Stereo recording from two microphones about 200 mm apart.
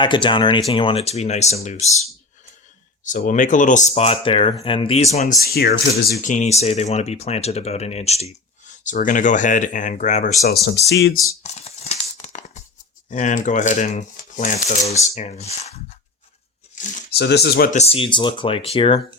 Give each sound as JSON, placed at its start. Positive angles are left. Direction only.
{"t": 0.0, "sound": "speech", "side_deg": 25}
{"t": 3.0, "sound": "speech", "side_deg": 40}
{"t": 5.5, "sound": "speech", "side_deg": 50}
{"t": 10.7, "sound": "speech", "side_deg": 60}
{"t": 11.4, "sound": "a sound", "side_deg": 30}
{"t": 13.1, "sound": "speech", "side_deg": 40}
{"t": 16.7, "sound": "tearing", "side_deg": 40}
{"t": 17.2, "sound": "speech", "side_deg": 55}
{"t": 17.7, "sound": "speech", "side_deg": 30}